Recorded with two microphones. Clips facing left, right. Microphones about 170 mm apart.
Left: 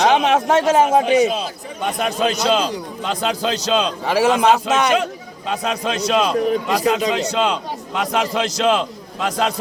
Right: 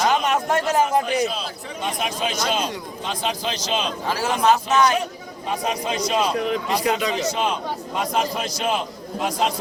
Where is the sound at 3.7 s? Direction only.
75° left (ahead or behind).